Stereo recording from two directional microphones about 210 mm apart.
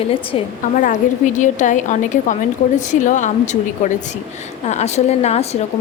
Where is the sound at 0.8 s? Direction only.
35° left (ahead or behind).